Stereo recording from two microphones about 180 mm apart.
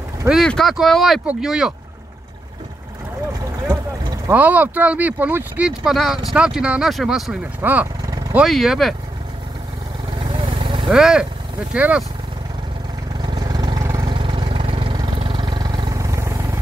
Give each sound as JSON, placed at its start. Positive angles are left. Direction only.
{"t": 0.3, "sound": "speech", "side_deg": 0}
{"t": 3.4, "sound": "boat", "side_deg": -20}
{"t": 4.4, "sound": "speech", "side_deg": -10}
{"t": 10.2, "sound": "vehicle", "side_deg": -30}
{"t": 10.9, "sound": "speech", "side_deg": -5}
{"t": 13.2, "sound": "vehicle", "side_deg": -25}